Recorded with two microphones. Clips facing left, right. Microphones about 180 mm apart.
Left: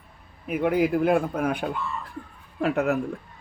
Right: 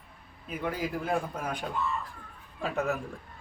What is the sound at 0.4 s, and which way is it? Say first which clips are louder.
A man's voice: left 10 dB; 65° left (ahead or behind).